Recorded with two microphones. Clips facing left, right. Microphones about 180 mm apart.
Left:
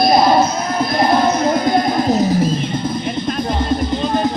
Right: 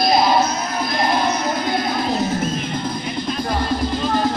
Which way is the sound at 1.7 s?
40° left (ahead or behind).